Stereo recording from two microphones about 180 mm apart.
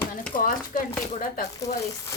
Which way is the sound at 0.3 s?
45° left (ahead or behind).